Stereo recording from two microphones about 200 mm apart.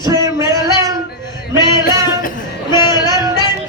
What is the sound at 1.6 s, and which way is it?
Music, 20° left (ahead or behind).